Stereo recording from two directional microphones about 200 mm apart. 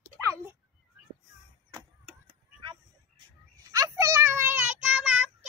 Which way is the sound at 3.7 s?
15° right (ahead or behind).